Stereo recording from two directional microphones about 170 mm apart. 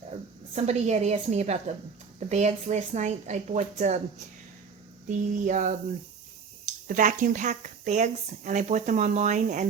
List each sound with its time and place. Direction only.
0.5 s a woman's voice: 40° right (ahead or behind)
5.0 s a woman's voice: 50° right (ahead or behind)
6.8 s a woman's voice: 50° right (ahead or behind)